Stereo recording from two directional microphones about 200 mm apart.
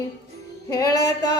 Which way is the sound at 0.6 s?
20° left (ahead or behind).